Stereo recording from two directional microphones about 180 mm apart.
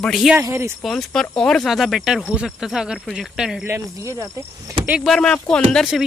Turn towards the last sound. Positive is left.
turn(degrees=0)  # may be behind; listen again after turning